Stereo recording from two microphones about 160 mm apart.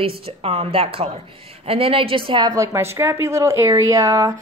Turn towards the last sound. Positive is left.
turn(degrees=-20)  # may be behind; listen again after turning